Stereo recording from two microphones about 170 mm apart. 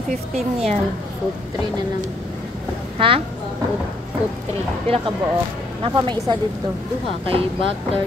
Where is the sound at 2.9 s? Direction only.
30° right (ahead or behind).